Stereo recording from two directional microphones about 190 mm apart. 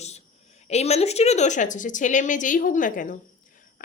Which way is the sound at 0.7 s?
35° left (ahead or behind).